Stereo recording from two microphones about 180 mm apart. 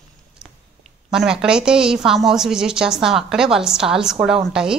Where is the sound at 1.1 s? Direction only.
5° right (ahead or behind).